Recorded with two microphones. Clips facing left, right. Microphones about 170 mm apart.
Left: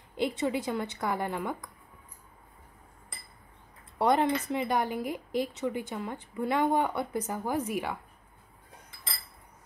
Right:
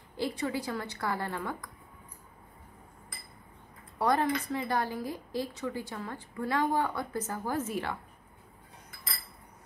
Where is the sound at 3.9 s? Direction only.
25° left (ahead or behind).